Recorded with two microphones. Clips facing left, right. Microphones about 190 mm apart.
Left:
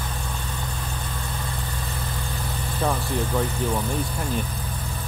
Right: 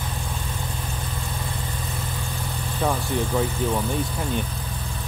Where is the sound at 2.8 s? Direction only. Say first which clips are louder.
Right 1 dB; centre (ahead or behind).